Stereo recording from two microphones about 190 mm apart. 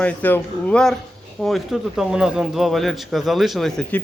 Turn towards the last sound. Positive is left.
turn(degrees=0)  # may be behind; listen again after turning